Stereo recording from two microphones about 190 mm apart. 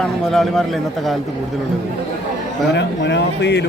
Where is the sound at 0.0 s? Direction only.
Centre (ahead or behind).